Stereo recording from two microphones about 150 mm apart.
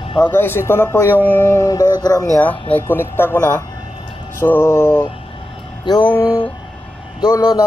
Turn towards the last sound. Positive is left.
turn(degrees=25)  # may be behind; listen again after turning